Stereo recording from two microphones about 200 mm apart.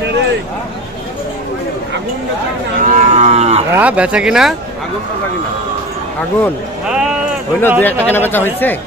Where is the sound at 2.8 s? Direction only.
35° right (ahead or behind).